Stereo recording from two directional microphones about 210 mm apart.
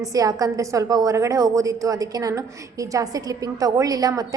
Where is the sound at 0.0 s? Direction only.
15° right (ahead or behind).